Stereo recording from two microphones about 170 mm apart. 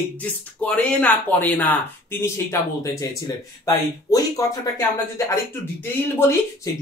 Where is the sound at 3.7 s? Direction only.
20° left (ahead or behind).